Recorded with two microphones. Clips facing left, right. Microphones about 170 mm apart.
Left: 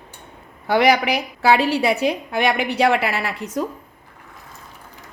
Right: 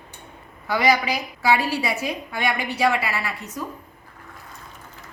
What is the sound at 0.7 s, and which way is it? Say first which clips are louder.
A woman's voice: left 4 dB; 65° left (ahead or behind).